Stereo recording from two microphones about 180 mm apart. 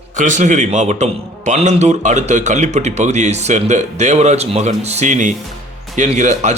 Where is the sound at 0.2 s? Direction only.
45° right (ahead or behind).